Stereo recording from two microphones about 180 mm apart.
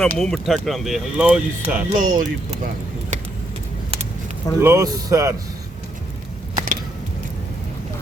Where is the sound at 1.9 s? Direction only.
45° right (ahead or behind).